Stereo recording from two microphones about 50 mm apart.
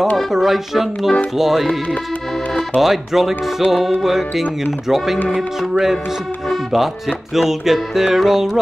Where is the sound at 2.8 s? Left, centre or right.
Centre.